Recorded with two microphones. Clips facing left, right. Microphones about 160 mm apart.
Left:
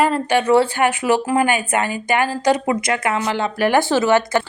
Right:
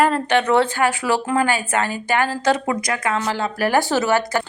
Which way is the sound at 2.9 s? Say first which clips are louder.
Left 2 dB; 25° left (ahead or behind).